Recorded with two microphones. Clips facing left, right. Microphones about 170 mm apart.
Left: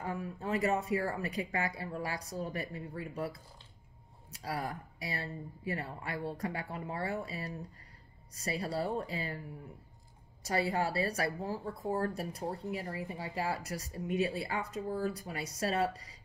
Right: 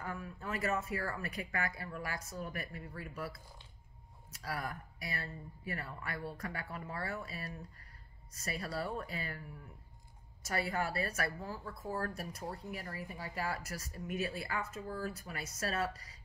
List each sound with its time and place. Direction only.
0.0 s a woman's voice: 30° left (ahead or behind)
4.4 s a woman's voice: 30° left (ahead or behind)
10.4 s speech: 30° left (ahead or behind)
12.4 s a woman's voice: 25° left (ahead or behind)